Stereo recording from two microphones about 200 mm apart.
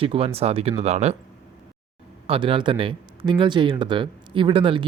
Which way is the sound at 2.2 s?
25° right (ahead or behind).